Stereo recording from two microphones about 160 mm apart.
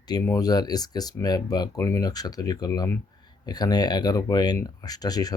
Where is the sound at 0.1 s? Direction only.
25° left (ahead or behind).